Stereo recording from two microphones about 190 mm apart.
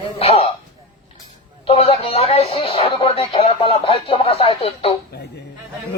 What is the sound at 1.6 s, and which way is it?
Speech, 30° left (ahead or behind).